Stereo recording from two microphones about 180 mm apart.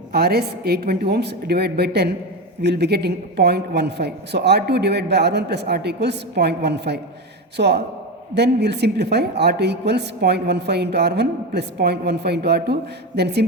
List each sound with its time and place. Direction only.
0.1 s a woman's voice: 60° right (ahead or behind)